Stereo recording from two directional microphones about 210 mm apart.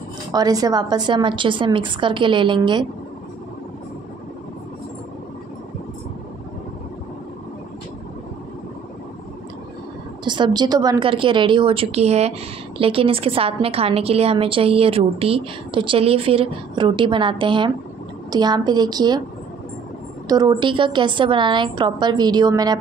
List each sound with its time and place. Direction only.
0.3 s a woman's voice: 20° right (ahead or behind)
10.2 s a woman's voice: 20° right (ahead or behind)
20.2 s a woman's voice: 20° right (ahead or behind)